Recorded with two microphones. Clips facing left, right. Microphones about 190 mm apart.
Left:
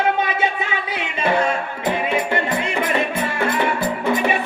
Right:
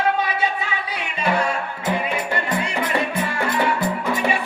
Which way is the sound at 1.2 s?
25° left (ahead or behind).